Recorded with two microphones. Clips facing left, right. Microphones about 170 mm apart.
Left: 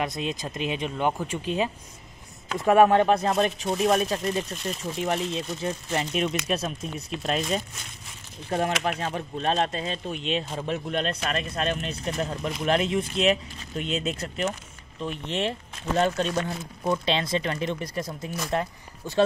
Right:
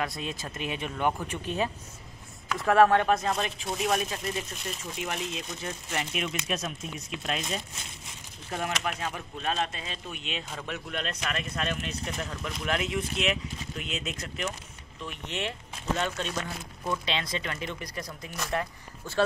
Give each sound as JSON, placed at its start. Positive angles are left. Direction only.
{"t": 0.0, "sound": "speech", "side_deg": 20}
{"t": 2.5, "sound": "speech", "side_deg": 20}
{"t": 3.4, "sound": "speech", "side_deg": 40}